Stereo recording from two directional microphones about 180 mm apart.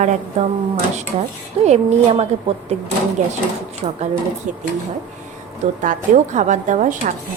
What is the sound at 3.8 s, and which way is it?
Speech, 35° right (ahead or behind).